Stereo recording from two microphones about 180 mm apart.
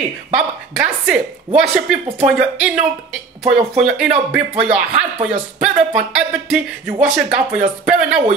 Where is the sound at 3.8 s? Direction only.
5° right (ahead or behind).